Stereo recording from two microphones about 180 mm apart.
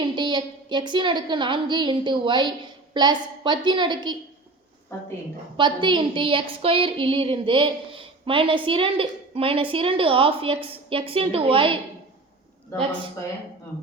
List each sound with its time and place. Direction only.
0.0 s speech: 25° right (ahead or behind)
4.9 s a woman's voice: 15° left (ahead or behind)
5.5 s speech: 25° right (ahead or behind)